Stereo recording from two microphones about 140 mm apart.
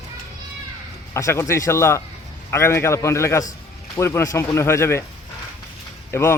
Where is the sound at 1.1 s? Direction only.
20° left (ahead or behind).